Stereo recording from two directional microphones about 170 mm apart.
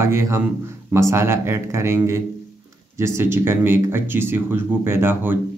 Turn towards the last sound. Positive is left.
turn(degrees=-15)  # may be behind; listen again after turning